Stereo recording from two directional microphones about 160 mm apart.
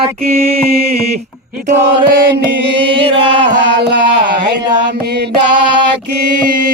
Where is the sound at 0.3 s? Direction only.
40° right (ahead or behind).